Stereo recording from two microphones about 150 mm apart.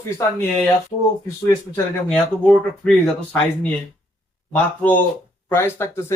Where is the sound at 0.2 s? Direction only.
20° left (ahead or behind).